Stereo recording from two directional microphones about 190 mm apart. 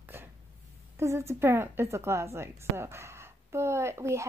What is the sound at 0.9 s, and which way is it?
A woman's voice, 15° right (ahead or behind).